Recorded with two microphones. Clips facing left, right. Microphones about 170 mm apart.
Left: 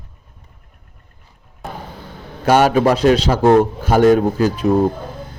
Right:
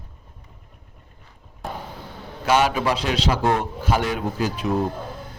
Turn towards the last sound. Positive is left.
turn(degrees=45)  # may be behind; listen again after turning